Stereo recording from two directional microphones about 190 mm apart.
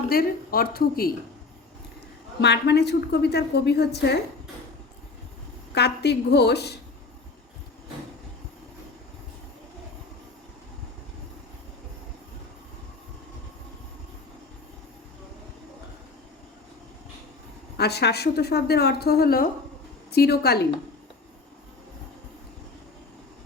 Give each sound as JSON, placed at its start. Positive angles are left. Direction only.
{"t": 0.1, "sound": "a woman's voice", "side_deg": 50}
{"t": 2.4, "sound": "a woman's voice", "side_deg": 60}
{"t": 5.7, "sound": "a woman's voice", "side_deg": 60}
{"t": 17.7, "sound": "a woman's voice", "side_deg": 60}